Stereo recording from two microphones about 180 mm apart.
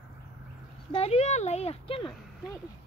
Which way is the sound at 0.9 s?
35° left (ahead or behind).